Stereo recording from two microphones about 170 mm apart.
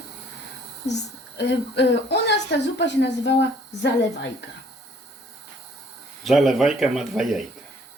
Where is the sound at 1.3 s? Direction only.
90° left.